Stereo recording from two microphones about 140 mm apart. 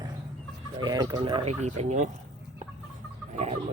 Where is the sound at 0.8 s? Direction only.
30° right (ahead or behind); by 2.1 s 55° right (ahead or behind).